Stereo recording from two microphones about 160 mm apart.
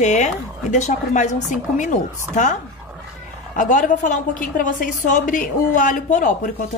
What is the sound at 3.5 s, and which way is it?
A woman's voice, 55° left (ahead or behind).